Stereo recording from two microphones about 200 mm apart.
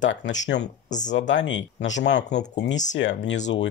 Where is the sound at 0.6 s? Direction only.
40° left (ahead or behind).